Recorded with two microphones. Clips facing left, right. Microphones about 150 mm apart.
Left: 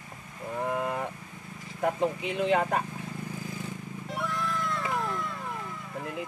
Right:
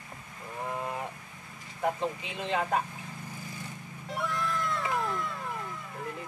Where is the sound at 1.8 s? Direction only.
55° left (ahead or behind).